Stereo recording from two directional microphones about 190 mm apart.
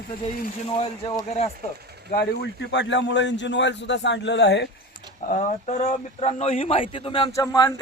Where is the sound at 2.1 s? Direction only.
55° left (ahead or behind).